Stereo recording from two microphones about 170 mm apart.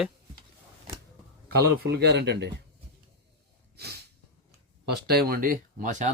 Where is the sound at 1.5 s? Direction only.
70° right (ahead or behind); by 2.5 s 85° right.